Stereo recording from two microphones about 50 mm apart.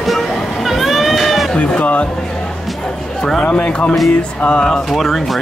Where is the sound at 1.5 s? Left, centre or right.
Left.